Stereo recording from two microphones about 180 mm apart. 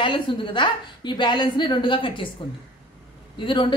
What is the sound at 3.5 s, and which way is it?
Speech, 25° left (ahead or behind).